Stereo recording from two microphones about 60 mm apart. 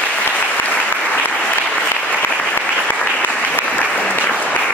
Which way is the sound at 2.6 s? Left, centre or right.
Left.